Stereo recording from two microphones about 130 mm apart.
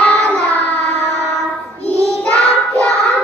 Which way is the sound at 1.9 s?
20° right (ahead or behind).